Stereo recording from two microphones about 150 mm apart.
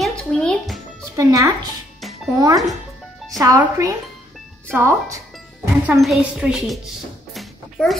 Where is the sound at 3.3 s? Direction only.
25° right (ahead or behind).